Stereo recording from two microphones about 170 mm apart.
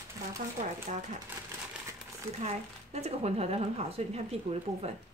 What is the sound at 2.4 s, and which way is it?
Speech, 40° right (ahead or behind).